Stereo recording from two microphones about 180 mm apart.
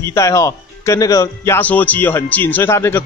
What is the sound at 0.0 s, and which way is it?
A man's voice, 15° left (ahead or behind).